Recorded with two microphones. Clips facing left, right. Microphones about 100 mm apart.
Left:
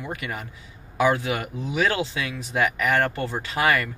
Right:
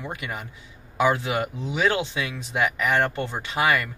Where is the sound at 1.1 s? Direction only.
25° right (ahead or behind).